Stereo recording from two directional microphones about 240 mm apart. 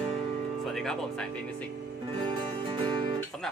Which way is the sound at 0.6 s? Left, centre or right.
Centre.